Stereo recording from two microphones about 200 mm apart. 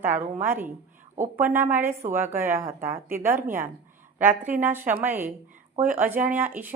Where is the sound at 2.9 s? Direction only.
45° right (ahead or behind).